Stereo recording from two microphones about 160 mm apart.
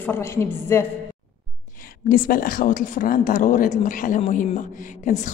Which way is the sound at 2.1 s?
60° left (ahead or behind).